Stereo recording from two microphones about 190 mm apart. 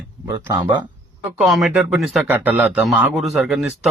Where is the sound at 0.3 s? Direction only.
15° right (ahead or behind).